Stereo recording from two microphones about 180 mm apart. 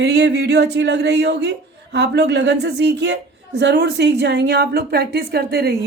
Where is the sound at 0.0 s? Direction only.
70° right (ahead or behind).